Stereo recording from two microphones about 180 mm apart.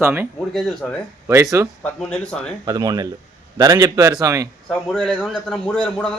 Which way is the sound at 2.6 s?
20° right (ahead or behind).